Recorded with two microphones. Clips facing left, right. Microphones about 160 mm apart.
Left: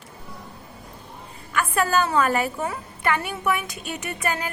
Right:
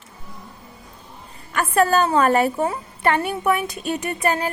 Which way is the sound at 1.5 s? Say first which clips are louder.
Right 4 dB; 40° right (ahead or behind).